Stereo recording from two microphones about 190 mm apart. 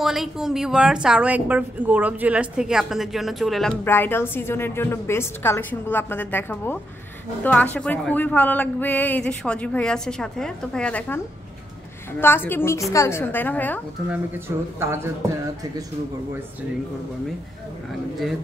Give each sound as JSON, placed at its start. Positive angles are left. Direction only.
{"t": 0.0, "sound": "a woman's voice", "side_deg": 0}
{"t": 3.8, "sound": "speech", "side_deg": 10}
{"t": 12.2, "sound": "speech", "side_deg": 10}
{"t": 14.8, "sound": "a man's voice", "side_deg": -15}